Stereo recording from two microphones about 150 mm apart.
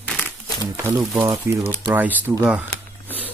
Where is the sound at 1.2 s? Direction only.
15° right (ahead or behind).